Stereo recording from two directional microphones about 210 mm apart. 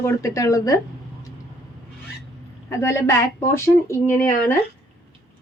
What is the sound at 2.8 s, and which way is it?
A woman's voice, 10° left (ahead or behind).